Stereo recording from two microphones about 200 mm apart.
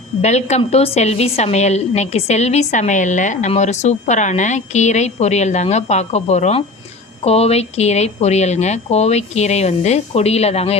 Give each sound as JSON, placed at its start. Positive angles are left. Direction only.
{"t": 0.2, "sound": "a woman's voice", "side_deg": 35}